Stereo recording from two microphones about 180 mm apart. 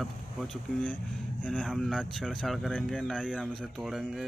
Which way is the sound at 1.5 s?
5° left (ahead or behind).